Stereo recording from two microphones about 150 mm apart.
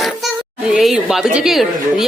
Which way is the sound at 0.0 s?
Centre (ahead or behind).